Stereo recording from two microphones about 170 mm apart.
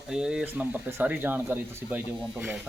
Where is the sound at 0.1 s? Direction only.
5° right (ahead or behind).